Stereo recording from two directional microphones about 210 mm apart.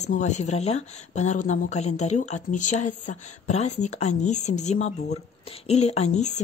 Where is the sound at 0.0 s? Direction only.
35° left (ahead or behind).